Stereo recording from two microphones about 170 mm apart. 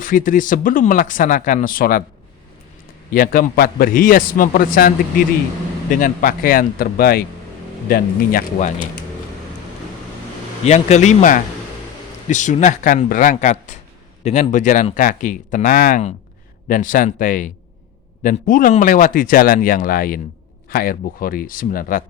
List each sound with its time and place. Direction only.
0.0 s speech: 50° left (ahead or behind)
3.1 s a man's voice: 60° left (ahead or behind)
5.9 s a man's voice: 55° left (ahead or behind)
10.6 s a man's voice: 40° left (ahead or behind)